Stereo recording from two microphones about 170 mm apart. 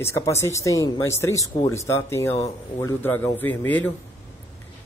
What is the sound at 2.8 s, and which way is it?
Speech, 15° left (ahead or behind).